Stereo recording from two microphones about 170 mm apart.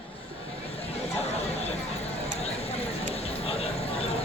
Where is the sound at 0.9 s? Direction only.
40° left (ahead or behind).